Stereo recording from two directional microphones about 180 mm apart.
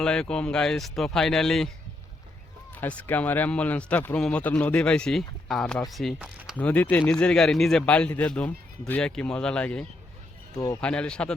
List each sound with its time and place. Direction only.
0.0 s speech: 5° left (ahead or behind)
2.8 s a man's voice: 10° left (ahead or behind)
6.6 s a man's voice: 10° left (ahead or behind)
10.5 s speech: 20° left (ahead or behind)
10.8 s speech: 5° left (ahead or behind)